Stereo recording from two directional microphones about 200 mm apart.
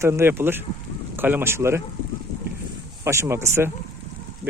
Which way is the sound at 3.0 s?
15° right (ahead or behind).